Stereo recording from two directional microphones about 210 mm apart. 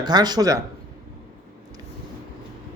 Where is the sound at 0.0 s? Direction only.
20° right (ahead or behind).